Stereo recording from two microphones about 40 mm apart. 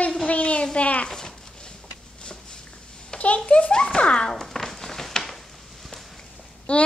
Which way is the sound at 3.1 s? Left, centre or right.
Left.